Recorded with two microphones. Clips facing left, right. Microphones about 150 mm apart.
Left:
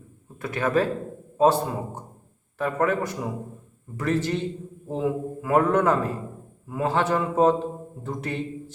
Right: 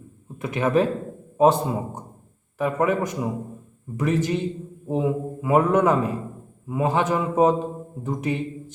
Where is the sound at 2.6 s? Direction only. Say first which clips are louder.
Right 2 dB; 15° right (ahead or behind).